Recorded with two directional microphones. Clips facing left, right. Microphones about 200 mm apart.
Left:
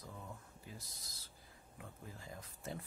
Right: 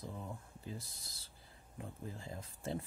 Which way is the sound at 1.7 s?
30° right (ahead or behind).